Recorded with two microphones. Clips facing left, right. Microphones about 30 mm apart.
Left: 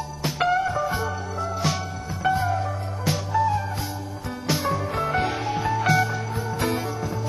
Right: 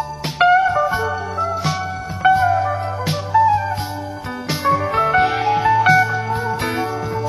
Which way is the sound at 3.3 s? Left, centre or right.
Centre.